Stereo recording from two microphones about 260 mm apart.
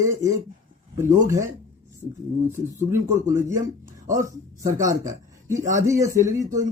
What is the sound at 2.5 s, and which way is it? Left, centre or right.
Speech, centre.